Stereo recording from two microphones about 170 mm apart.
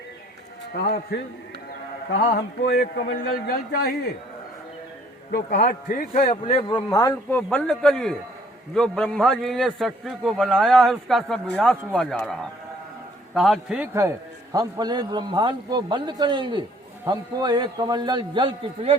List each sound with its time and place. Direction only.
2.6 s a man's voice: 80° left
5.3 s a man's voice: 55° left (ahead or behind)
6.3 s a man's voice: 30° left (ahead or behind); by 18.9 s 30° right (ahead or behind)